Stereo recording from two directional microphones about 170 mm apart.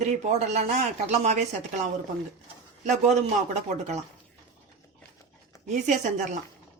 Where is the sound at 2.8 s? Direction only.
45° right (ahead or behind).